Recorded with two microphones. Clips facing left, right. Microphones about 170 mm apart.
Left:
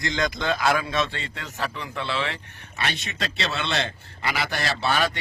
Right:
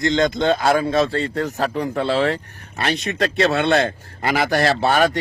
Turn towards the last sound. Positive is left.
turn(degrees=-45)  # may be behind; listen again after turning